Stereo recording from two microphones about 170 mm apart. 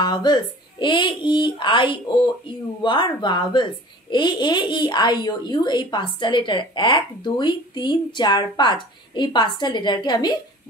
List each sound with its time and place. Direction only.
0.0 s a child's voice: 25° left (ahead or behind)